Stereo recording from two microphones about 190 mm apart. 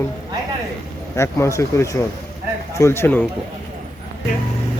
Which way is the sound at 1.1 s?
15° left (ahead or behind).